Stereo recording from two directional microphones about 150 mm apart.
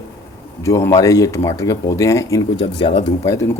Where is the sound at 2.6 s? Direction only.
35° left (ahead or behind).